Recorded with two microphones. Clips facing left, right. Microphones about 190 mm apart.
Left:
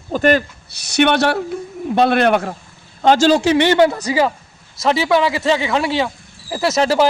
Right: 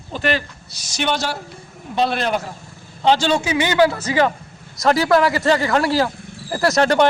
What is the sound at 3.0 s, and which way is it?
Speech, 45° left (ahead or behind).